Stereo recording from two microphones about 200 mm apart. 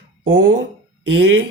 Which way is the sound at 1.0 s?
65° right (ahead or behind).